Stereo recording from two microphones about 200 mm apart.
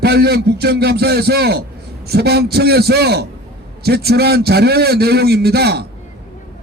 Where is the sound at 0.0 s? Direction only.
55° right (ahead or behind).